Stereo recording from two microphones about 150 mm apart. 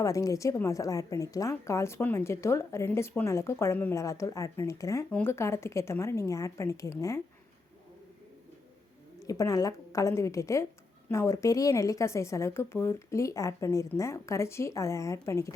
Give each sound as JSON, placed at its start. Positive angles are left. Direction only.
{"t": 0.0, "sound": "a woman's voice", "side_deg": 20}
{"t": 9.2, "sound": "a woman's voice", "side_deg": 25}